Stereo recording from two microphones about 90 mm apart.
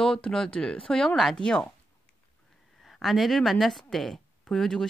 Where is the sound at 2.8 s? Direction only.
Centre (ahead or behind).